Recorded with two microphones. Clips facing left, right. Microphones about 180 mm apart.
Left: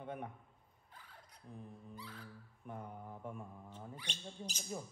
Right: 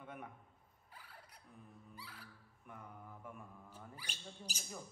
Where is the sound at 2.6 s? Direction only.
30° left (ahead or behind).